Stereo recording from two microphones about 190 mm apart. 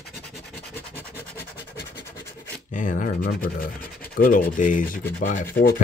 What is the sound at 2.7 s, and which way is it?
Speech, 45° left (ahead or behind).